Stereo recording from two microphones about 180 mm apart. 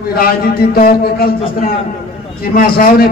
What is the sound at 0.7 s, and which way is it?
Speech, 55° left (ahead or behind).